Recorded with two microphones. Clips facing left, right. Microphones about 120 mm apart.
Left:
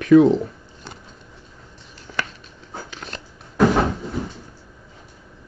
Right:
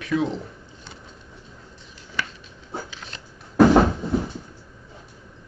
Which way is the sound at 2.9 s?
50° left (ahead or behind).